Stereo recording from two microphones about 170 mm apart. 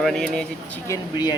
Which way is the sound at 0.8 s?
20° left (ahead or behind).